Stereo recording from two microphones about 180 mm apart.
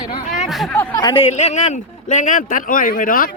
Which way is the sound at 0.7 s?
20° left (ahead or behind).